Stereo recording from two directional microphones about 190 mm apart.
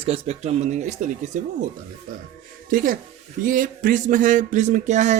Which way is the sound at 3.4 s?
45° right (ahead or behind).